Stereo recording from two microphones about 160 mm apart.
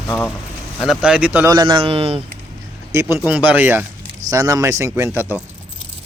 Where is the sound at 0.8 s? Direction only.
5° right (ahead or behind).